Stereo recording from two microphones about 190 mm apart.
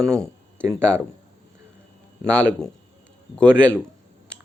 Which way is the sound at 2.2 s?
5° left (ahead or behind).